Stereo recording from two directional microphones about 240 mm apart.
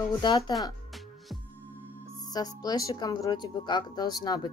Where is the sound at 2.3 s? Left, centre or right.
Centre.